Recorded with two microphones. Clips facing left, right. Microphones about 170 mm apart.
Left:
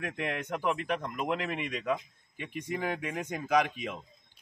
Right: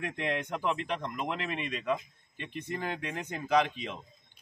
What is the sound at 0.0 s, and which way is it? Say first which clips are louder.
A man's voice: right 1 dB; 5° left (ahead or behind).